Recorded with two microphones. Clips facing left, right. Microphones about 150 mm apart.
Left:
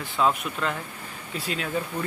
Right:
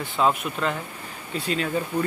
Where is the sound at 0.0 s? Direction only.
Centre (ahead or behind).